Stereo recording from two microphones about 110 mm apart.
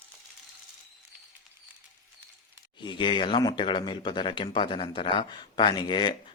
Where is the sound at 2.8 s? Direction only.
45° left (ahead or behind).